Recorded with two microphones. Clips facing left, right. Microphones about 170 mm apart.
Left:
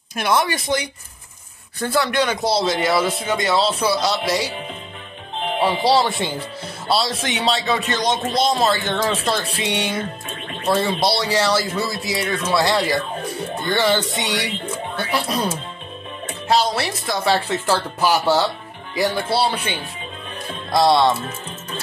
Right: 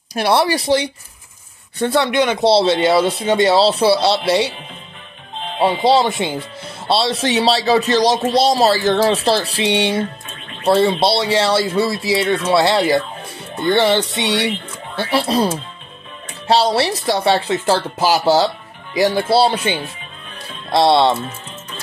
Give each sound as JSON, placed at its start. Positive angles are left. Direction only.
{"t": 0.1, "sound": "speech", "side_deg": -35}
{"t": 5.6, "sound": "speech", "side_deg": -25}
{"t": 19.0, "sound": "speech", "side_deg": -30}